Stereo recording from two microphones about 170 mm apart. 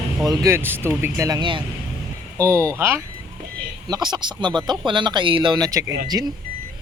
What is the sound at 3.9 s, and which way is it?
Speech, 25° right (ahead or behind).